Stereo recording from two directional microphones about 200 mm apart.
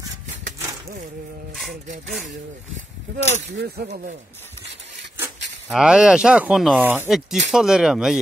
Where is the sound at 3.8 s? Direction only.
40° right (ahead or behind).